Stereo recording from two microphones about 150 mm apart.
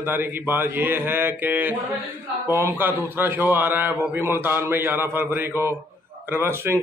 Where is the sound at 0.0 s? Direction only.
15° right (ahead or behind).